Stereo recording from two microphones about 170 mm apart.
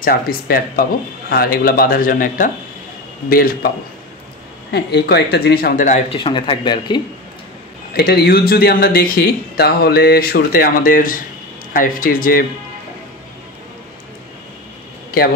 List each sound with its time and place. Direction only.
0.0 s speech: 60° left (ahead or behind)
4.7 s speech: 75° left (ahead or behind); by 6.1 s 45° left (ahead or behind)
6.1 s speech: 30° left (ahead or behind)
7.9 s speech: 65° left (ahead or behind)